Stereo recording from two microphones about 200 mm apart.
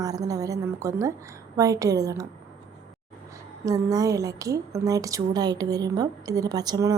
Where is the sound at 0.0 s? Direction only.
15° right (ahead or behind).